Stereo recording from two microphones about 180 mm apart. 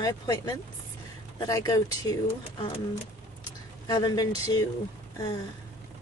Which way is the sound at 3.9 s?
25° left (ahead or behind).